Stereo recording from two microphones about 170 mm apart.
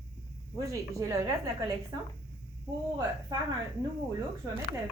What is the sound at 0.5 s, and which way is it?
A woman's voice, 15° right (ahead or behind).